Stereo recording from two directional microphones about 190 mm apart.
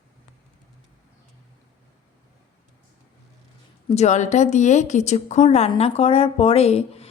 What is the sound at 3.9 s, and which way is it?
A woman's voice, 35° left (ahead or behind).